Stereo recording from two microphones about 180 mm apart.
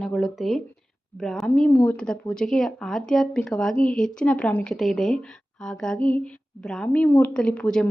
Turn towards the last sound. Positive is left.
turn(degrees=5)  # may be behind; listen again after turning